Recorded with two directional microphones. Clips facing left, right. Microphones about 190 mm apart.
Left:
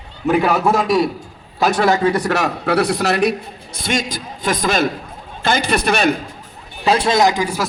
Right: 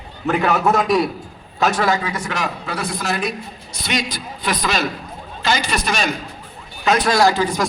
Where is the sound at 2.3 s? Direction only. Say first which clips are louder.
Left 7 dB; 65° left (ahead or behind).